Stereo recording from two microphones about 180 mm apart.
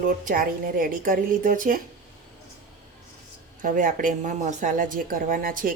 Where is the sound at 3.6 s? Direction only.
50° right (ahead or behind).